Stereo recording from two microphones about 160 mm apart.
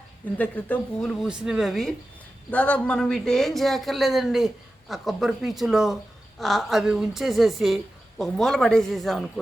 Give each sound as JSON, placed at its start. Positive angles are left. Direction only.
{"t": 0.3, "sound": "speech", "side_deg": 10}
{"t": 1.2, "sound": "speech", "side_deg": -5}